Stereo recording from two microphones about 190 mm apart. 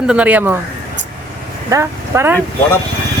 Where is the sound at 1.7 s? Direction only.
15° right (ahead or behind).